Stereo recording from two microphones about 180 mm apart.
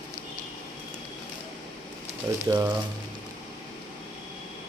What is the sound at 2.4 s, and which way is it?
Speech, 15° right (ahead or behind).